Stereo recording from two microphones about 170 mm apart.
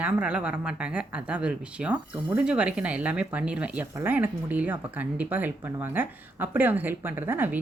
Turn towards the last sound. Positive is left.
turn(degrees=-10)  # may be behind; listen again after turning